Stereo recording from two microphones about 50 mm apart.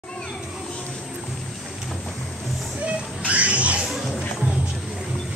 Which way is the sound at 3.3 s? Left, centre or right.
Right.